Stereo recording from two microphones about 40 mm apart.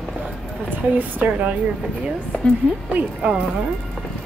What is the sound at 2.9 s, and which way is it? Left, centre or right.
Speech, right.